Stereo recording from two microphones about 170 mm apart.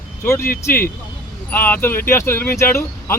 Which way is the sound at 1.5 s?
10° left (ahead or behind).